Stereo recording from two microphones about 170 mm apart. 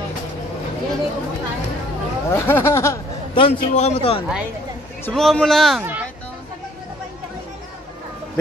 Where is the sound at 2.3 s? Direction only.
15° left (ahead or behind).